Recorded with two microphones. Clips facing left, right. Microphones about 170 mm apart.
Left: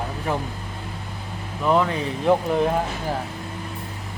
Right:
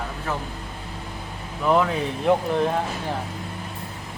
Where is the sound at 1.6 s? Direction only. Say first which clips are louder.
Even; centre (ahead or behind).